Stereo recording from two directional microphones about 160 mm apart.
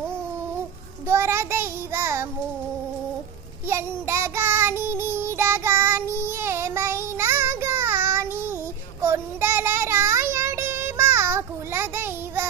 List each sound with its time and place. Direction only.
1.0 s child singing: 15° right (ahead or behind)
3.6 s child singing: 15° right (ahead or behind)